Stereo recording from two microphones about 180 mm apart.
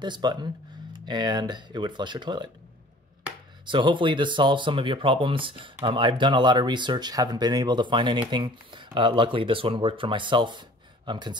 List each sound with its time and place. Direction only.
0.0 s speech: 25° right (ahead or behind)
3.6 s speech: 25° right (ahead or behind)